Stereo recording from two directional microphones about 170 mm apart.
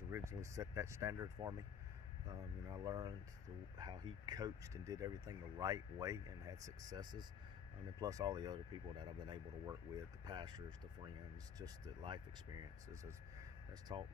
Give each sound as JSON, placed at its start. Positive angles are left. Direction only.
{"t": 0.1, "sound": "speech", "side_deg": -15}